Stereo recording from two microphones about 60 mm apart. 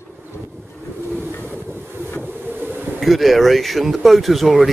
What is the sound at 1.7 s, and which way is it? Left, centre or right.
Boat, right.